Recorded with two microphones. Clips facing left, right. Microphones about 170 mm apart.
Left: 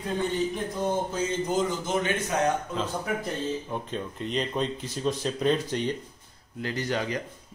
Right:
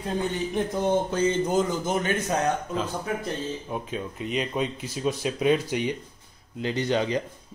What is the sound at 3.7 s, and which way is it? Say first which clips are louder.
Speech: right 1 dB; 5° right (ahead or behind).